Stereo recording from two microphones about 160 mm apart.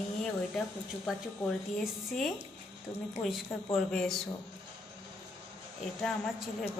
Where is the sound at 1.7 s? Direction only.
Centre (ahead or behind).